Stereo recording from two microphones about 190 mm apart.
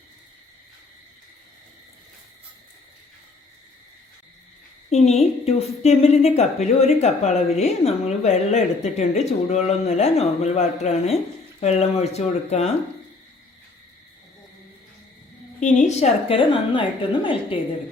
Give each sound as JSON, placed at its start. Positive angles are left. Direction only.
{"t": 4.9, "sound": "a woman's voice", "side_deg": 35}
{"t": 15.6, "sound": "a woman's voice", "side_deg": 35}